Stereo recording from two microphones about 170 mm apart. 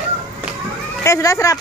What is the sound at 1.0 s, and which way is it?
Speech, 20° left (ahead or behind).